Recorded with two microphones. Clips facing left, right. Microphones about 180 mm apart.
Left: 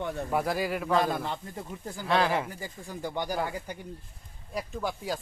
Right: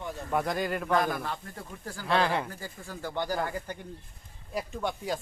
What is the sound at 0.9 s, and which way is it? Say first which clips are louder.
A man's voice: left 2 dB; 25° left (ahead or behind).